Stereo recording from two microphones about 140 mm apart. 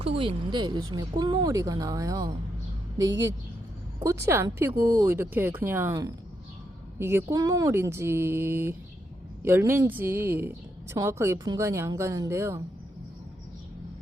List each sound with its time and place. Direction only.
0.0 s a woman's voice: 40° right (ahead or behind)
4.0 s a woman's voice: 20° right (ahead or behind)